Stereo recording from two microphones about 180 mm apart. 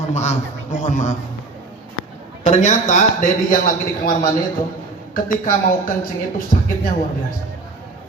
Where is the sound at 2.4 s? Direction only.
40° left (ahead or behind).